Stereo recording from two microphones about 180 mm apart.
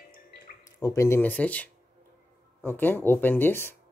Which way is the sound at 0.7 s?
15° left (ahead or behind).